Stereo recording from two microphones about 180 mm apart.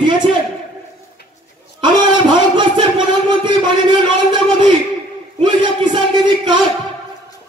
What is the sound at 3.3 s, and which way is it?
A man's voice, 25° right (ahead or behind).